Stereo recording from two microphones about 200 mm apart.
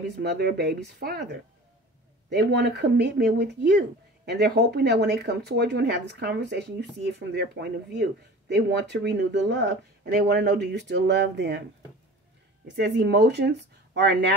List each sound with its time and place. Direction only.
0.2 s speech: 55° right (ahead or behind)
12.6 s speech: 60° right (ahead or behind)